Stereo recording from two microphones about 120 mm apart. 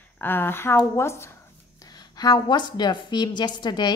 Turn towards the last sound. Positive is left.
turn(degrees=40)  # may be behind; listen again after turning